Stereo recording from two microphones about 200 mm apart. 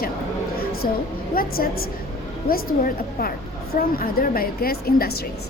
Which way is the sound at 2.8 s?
45° left (ahead or behind).